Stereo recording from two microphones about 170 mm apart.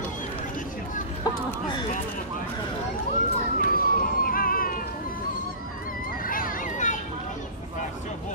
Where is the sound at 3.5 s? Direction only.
55° left (ahead or behind).